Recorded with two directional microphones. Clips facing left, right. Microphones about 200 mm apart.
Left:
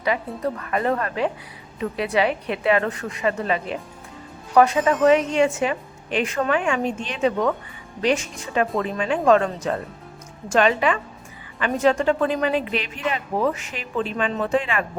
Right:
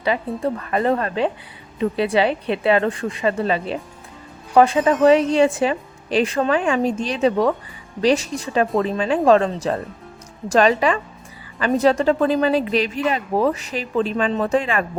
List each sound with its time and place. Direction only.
0.3 s a man's voice: 30° right (ahead or behind)